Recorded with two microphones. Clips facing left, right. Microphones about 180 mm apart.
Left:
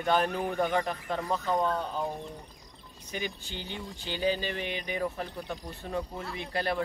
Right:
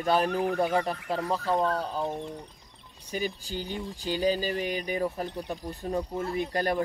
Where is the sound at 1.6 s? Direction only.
35° right (ahead or behind).